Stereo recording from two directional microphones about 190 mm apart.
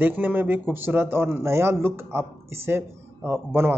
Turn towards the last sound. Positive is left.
turn(degrees=-10)  # may be behind; listen again after turning